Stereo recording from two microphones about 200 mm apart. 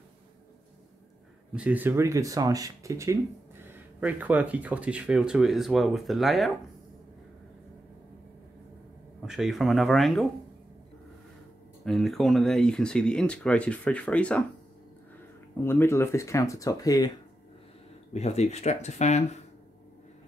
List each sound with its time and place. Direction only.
1.5 s speech: 5° right (ahead or behind)
9.2 s speech: centre (ahead or behind)
11.8 s speech: centre (ahead or behind)
15.6 s speech: 10° left (ahead or behind)
18.1 s speech: 35° left (ahead or behind)